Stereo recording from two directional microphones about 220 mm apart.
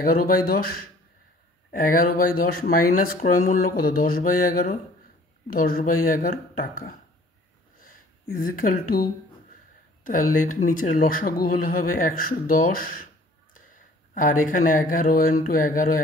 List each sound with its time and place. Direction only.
0.0 s speech: 40° left (ahead or behind)
1.7 s speech: 40° left (ahead or behind)
14.1 s speech: 35° left (ahead or behind)